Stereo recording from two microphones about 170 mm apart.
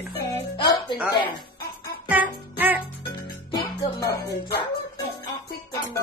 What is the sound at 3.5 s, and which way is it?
Music, 20° left (ahead or behind).